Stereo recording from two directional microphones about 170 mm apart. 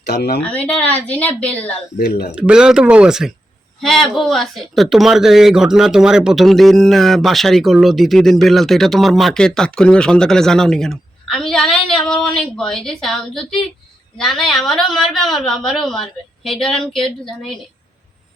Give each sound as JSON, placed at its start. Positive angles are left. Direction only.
{"t": 0.0, "sound": "speech", "side_deg": 70}
{"t": 0.5, "sound": "a woman's voice", "side_deg": 10}
{"t": 2.0, "sound": "speech", "side_deg": 65}
{"t": 2.3, "sound": "a man's voice", "side_deg": -5}